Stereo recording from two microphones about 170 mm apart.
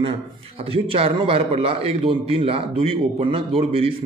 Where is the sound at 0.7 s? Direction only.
35° right (ahead or behind).